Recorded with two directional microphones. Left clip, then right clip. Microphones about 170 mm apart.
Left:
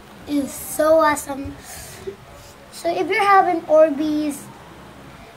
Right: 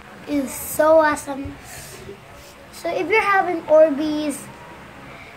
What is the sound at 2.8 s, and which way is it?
Speech, 25° right (ahead or behind).